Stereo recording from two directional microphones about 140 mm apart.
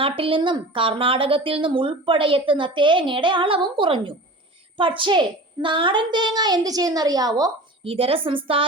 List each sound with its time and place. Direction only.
0.0 s a woman's voice: 40° right (ahead or behind)
7.9 s a woman's voice: 45° right (ahead or behind)